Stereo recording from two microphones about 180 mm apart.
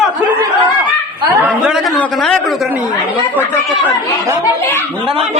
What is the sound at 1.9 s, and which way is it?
Speech, 5° left (ahead or behind).